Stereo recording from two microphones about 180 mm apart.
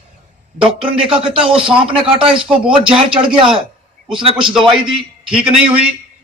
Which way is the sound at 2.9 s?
30° right (ahead or behind).